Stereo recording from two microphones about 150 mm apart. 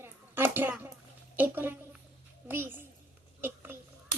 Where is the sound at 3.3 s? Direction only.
15° right (ahead or behind).